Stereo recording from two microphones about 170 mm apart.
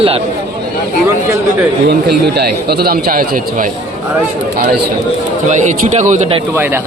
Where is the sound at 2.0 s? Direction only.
70° right (ahead or behind); by 3.7 s 55° right (ahead or behind).